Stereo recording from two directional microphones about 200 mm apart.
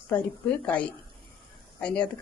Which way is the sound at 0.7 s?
5° left (ahead or behind).